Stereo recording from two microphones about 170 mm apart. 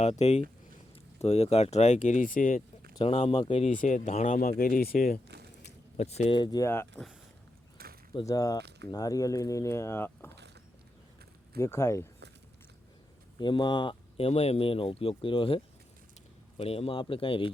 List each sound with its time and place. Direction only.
0.0 s speech: 40° left (ahead or behind)
3.0 s speech: 35° left (ahead or behind)
3.8 s speech: 45° left (ahead or behind)
6.0 s speech: 40° left (ahead or behind); by 7.0 s 15° left (ahead or behind)
7.8 s a sound: 65° right (ahead or behind)
8.2 s speech: 20° left (ahead or behind)
11.6 s speech: 15° left (ahead or behind)
13.4 s speech: 25° left (ahead or behind)